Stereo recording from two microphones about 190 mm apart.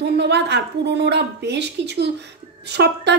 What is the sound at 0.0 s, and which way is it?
A woman's voice, 65° right (ahead or behind).